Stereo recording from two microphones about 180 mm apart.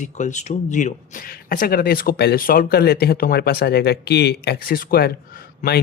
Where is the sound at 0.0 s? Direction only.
40° left (ahead or behind).